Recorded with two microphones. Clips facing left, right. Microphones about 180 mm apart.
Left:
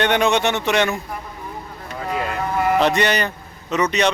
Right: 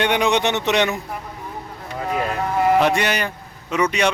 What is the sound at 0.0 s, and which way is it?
Speech, 15° right (ahead or behind).